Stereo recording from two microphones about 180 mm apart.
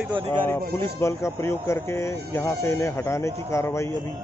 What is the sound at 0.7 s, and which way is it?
Speech, 15° left (ahead or behind).